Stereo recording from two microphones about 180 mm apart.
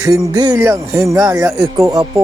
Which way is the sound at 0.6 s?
15° right (ahead or behind).